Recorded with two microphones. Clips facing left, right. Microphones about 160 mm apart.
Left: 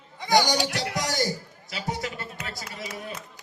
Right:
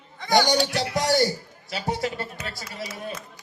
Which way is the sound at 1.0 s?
30° right (ahead or behind).